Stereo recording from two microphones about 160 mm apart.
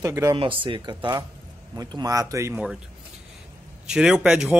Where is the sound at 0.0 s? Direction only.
20° right (ahead or behind).